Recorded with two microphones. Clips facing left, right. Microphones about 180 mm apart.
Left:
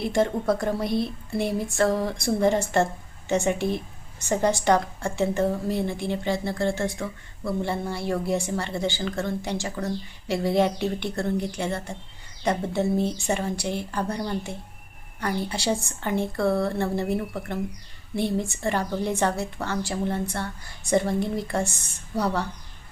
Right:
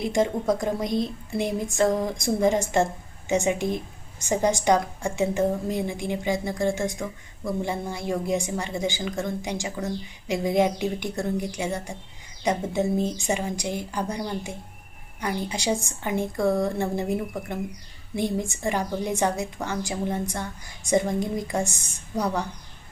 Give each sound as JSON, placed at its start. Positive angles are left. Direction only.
{"t": 0.0, "sound": "a woman's voice", "side_deg": -15}